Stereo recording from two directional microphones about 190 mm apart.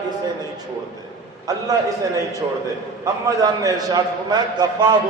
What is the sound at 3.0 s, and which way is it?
A man's voice, 20° right (ahead or behind).